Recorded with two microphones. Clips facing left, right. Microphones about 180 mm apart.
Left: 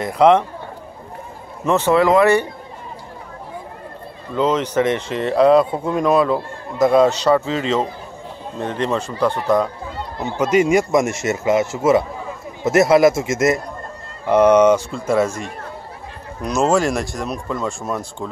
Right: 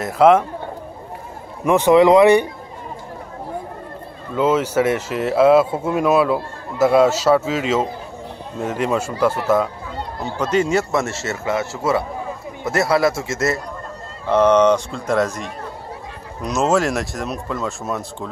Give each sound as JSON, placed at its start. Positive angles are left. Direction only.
{"t": 0.0, "sound": "speech", "side_deg": -5}
{"t": 1.6, "sound": "speech", "side_deg": -15}
{"t": 4.4, "sound": "speech", "side_deg": -5}
{"t": 10.2, "sound": "a man's voice", "side_deg": 10}
{"t": 16.4, "sound": "speech", "side_deg": 0}